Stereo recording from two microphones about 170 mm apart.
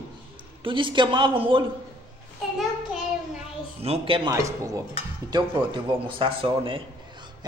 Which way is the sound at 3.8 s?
35° right (ahead or behind).